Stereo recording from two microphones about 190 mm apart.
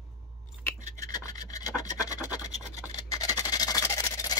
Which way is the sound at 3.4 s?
20° left (ahead or behind).